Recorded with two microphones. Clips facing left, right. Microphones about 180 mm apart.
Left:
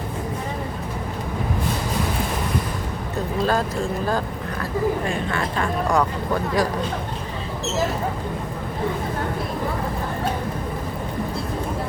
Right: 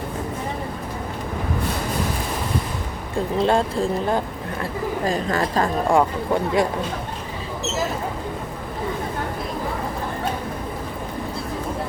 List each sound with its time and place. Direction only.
3.2 s speech: 25° right (ahead or behind)
5.0 s a woman's voice: 40° right (ahead or behind)
6.0 s speech: 25° right (ahead or behind)